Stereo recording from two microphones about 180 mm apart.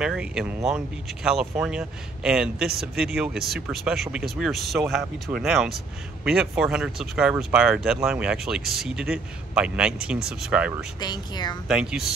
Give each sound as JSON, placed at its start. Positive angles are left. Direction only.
{"t": 0.0, "sound": "speech", "side_deg": -5}
{"t": 11.0, "sound": "speech", "side_deg": 25}
{"t": 11.6, "sound": "speech", "side_deg": -5}